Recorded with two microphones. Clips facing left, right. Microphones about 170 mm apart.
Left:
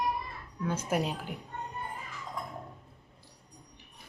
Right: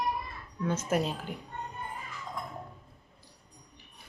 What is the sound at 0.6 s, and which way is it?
Speech, 10° left (ahead or behind).